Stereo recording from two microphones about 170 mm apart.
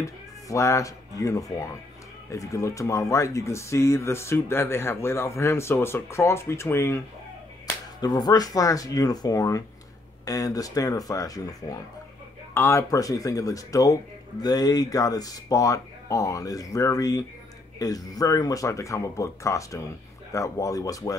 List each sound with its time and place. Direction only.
0.0 s speech: 20° left (ahead or behind)